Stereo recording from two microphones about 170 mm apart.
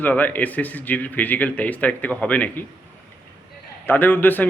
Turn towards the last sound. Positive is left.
turn(degrees=10)  # may be behind; listen again after turning